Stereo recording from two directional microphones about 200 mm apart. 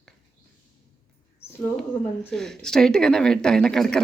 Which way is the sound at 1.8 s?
5° left (ahead or behind).